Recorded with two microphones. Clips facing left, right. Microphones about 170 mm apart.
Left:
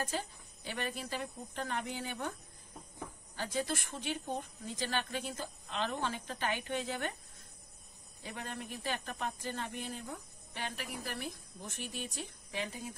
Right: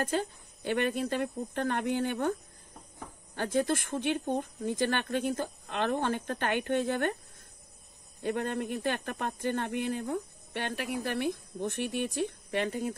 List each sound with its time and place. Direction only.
0.0 s speech: 60° right (ahead or behind)
3.3 s speech: 55° right (ahead or behind)
8.2 s speech: 60° right (ahead or behind)